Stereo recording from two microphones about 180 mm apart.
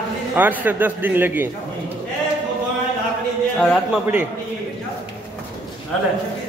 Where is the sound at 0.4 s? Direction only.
10° right (ahead or behind).